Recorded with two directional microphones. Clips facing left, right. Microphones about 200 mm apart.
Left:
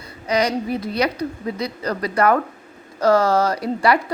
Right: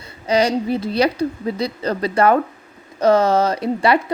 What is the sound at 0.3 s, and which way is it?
Speech, 30° right (ahead or behind).